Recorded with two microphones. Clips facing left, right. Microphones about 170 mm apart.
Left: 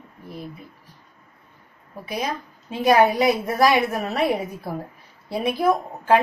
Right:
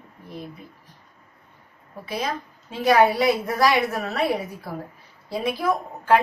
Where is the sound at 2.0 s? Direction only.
15° left (ahead or behind).